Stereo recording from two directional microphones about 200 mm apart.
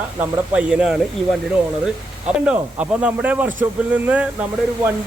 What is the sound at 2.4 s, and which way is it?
Speech, 5° right (ahead or behind).